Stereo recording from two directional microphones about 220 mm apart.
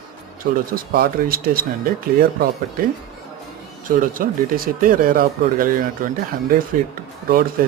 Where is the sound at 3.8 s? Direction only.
40° right (ahead or behind).